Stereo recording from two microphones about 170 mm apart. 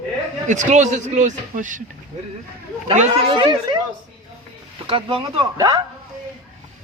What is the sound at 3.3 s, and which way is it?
Speech, 25° right (ahead or behind).